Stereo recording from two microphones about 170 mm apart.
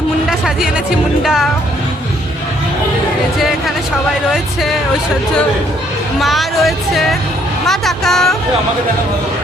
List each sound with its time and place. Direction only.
0.3 s music: 5° right (ahead or behind)
1.2 s speech: centre (ahead or behind)
6.1 s speech: centre (ahead or behind)